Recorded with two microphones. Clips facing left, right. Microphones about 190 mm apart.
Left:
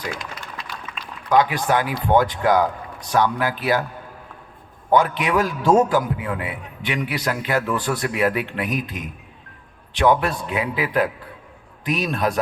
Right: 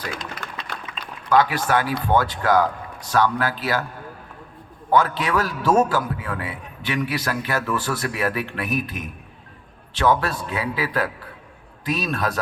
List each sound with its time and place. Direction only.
0.7 s a sound: 60° right (ahead or behind)
1.3 s a man's voice: 20° left (ahead or behind)
4.9 s a man's voice: 20° left (ahead or behind)